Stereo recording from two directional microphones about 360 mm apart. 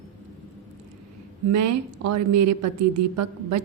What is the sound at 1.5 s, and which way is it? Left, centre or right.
A woman's voice, right.